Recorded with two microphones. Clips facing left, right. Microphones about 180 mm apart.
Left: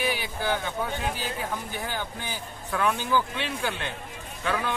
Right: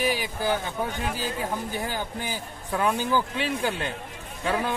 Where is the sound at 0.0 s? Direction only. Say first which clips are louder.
Right 3 dB; 40° right (ahead or behind).